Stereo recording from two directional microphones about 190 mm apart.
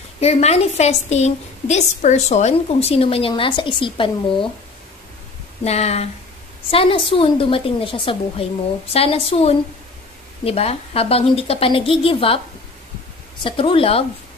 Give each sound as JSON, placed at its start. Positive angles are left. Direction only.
{"t": 0.2, "sound": "a woman's voice", "side_deg": 35}
{"t": 5.6, "sound": "a woman's voice", "side_deg": 35}
{"t": 13.4, "sound": "a woman's voice", "side_deg": 25}